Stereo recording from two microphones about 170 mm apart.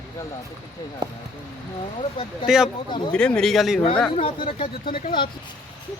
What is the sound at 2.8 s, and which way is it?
Speech, 30° left (ahead or behind).